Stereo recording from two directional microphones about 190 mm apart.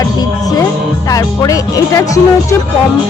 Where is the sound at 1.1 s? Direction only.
20° left (ahead or behind).